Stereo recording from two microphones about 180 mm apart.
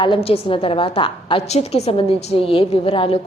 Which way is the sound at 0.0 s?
30° left (ahead or behind).